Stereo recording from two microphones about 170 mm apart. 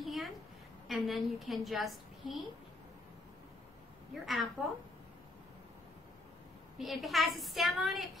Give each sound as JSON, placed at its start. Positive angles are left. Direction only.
{"t": 0.0, "sound": "a sound", "side_deg": 0}
{"t": 0.8, "sound": "a woman's voice", "side_deg": 0}
{"t": 4.1, "sound": "a woman's voice", "side_deg": 0}
{"t": 6.8, "sound": "a woman's voice", "side_deg": 0}